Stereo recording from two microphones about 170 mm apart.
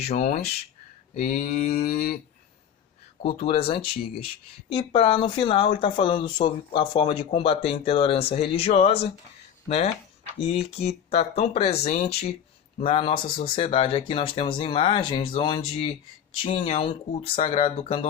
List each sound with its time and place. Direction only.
0.0 s speech: 40° left (ahead or behind)
1.2 s mantra: 55° left (ahead or behind)
3.3 s speech: 35° left (ahead or behind)